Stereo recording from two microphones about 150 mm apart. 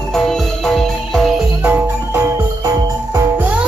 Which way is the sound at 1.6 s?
15° right (ahead or behind).